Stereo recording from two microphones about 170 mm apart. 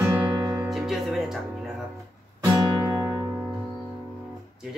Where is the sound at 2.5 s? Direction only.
20° right (ahead or behind).